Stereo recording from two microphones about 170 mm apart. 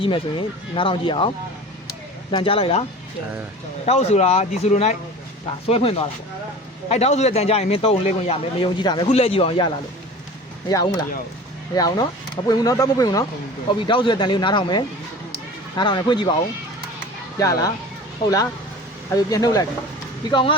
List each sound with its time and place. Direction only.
0.0 s a man's voice: 30° left (ahead or behind)
2.3 s a man's voice: 30° left (ahead or behind)
3.8 s a man's voice: 40° left (ahead or behind)
9.0 s a man's voice: 35° left (ahead or behind)
17.3 s speech: 20° left (ahead or behind)
19.1 s a man's voice: 20° left (ahead or behind)